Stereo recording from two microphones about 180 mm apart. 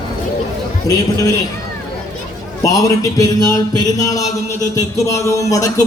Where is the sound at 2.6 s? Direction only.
20° left (ahead or behind).